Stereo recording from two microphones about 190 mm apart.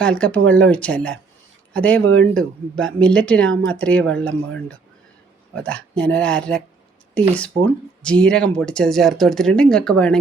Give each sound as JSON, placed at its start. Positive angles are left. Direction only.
{"t": 0.0, "sound": "speech", "side_deg": 5}
{"t": 2.0, "sound": "speech", "side_deg": -90}
{"t": 2.4, "sound": "speech", "side_deg": 5}